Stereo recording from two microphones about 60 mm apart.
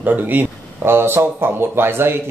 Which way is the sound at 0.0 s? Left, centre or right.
Right.